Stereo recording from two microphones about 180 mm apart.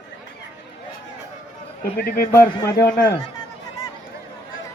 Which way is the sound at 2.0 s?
55° left (ahead or behind).